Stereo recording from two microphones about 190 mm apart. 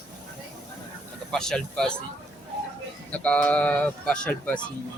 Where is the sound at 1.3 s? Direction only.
5° left (ahead or behind).